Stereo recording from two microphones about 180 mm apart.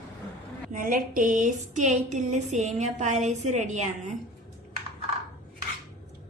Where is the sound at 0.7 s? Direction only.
50° right (ahead or behind).